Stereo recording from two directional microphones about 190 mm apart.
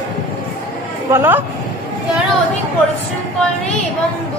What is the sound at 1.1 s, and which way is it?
Speech, 10° right (ahead or behind).